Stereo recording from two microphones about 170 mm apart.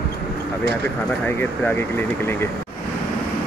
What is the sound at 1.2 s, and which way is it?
Speech, 10° left (ahead or behind).